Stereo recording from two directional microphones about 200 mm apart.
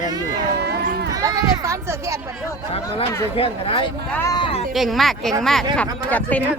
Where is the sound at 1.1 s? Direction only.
15° right (ahead or behind).